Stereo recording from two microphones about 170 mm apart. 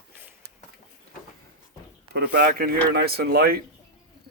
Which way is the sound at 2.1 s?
70° right (ahead or behind).